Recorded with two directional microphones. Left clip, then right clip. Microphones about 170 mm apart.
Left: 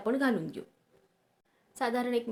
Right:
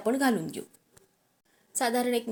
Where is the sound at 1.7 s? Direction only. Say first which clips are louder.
Right 3 dB; 15° right (ahead or behind).